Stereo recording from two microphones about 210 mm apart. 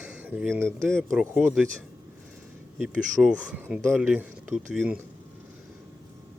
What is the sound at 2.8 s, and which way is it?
Speech, 5° right (ahead or behind).